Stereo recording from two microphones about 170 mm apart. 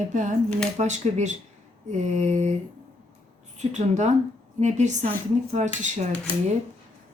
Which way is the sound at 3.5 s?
45° right (ahead or behind).